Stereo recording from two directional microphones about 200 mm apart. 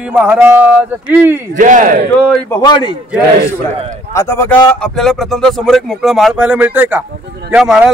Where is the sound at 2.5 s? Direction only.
20° left (ahead or behind).